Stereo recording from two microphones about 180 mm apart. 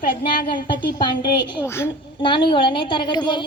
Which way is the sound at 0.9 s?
25° left (ahead or behind).